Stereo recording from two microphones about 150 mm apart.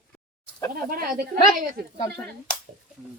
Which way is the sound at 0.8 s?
70° right (ahead or behind).